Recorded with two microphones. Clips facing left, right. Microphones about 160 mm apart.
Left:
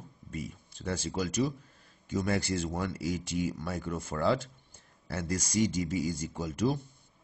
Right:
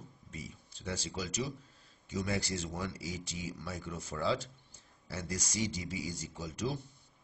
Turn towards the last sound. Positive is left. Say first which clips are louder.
# left 7 dB
turn(degrees=55)  # may be behind; listen again after turning